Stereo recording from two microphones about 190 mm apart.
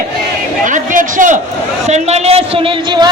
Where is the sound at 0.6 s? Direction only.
40° right (ahead or behind).